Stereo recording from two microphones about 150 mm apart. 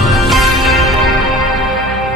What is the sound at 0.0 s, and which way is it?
Music, centre (ahead or behind).